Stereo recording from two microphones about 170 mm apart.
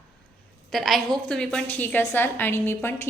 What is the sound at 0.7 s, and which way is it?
A woman's voice, centre (ahead or behind).